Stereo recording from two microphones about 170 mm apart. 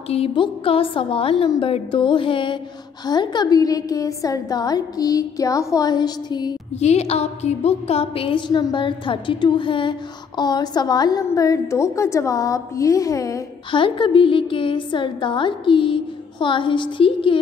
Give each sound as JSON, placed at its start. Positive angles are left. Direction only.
{"t": 0.1, "sound": "a woman's voice", "side_deg": 35}
{"t": 6.8, "sound": "a woman's voice", "side_deg": 40}
{"t": 13.7, "sound": "a woman's voice", "side_deg": 30}